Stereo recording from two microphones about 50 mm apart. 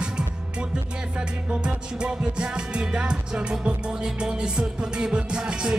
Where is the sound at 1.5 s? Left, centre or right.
Centre.